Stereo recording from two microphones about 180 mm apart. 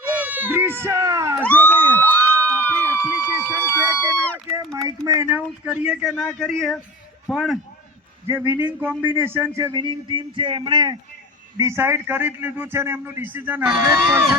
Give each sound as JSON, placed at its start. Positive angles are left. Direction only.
{"t": 0.1, "sound": "speech", "side_deg": -10}
{"t": 1.5, "sound": "crowd", "side_deg": 10}
{"t": 1.9, "sound": "emergency vehicle", "side_deg": 10}
{"t": 3.5, "sound": "a sound", "side_deg": -10}
{"t": 5.0, "sound": "speech", "side_deg": -15}
{"t": 8.3, "sound": "speech", "side_deg": -10}